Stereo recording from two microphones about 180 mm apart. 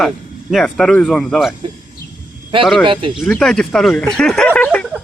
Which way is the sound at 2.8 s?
30° right (ahead or behind).